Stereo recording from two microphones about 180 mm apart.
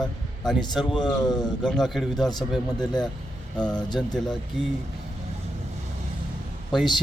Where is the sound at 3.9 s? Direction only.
5° left (ahead or behind).